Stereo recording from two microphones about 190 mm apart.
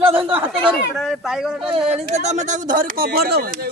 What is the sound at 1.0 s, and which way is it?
Speech, centre (ahead or behind).